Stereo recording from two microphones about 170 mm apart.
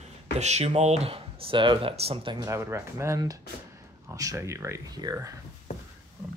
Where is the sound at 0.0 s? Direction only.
40° right (ahead or behind).